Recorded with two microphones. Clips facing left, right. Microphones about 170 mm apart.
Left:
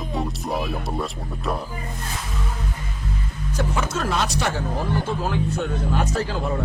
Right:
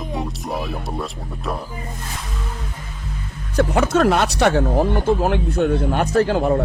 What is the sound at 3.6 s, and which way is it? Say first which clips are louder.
Speech: right 9 dB; 65° right (ahead or behind).